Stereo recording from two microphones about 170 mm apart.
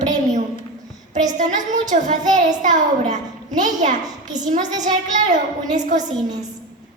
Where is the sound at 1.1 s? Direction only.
45° right (ahead or behind).